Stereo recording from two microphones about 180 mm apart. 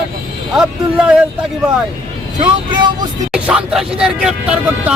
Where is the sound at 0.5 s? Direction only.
5° right (ahead or behind).